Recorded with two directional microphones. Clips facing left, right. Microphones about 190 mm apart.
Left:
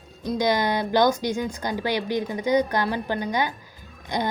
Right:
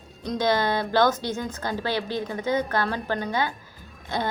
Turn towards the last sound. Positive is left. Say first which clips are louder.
# left 2 dB
turn(degrees=15)  # may be behind; listen again after turning